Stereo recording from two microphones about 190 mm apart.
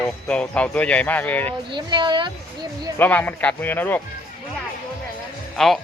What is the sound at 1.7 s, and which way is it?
Speech, 25° right (ahead or behind).